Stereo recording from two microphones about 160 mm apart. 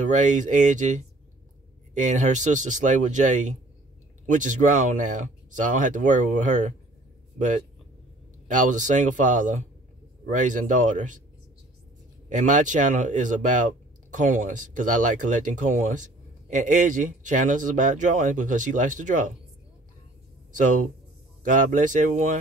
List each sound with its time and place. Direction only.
0.0 s speech: 50° right (ahead or behind)
12.3 s speech: 50° right (ahead or behind)
20.5 s speech: 55° right (ahead or behind)